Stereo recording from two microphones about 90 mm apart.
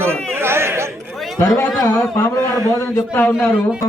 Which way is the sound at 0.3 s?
25° right (ahead or behind).